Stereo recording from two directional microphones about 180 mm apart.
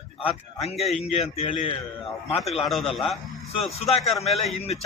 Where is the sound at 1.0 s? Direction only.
35° left (ahead or behind).